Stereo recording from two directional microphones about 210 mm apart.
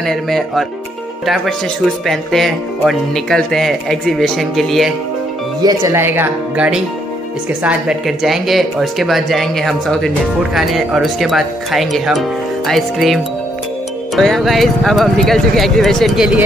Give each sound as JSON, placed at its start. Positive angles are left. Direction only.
{"t": 0.0, "sound": "speech", "side_deg": 0}
{"t": 5.6, "sound": "speech", "side_deg": -15}